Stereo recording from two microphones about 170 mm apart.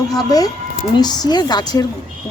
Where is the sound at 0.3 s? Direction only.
20° left (ahead or behind).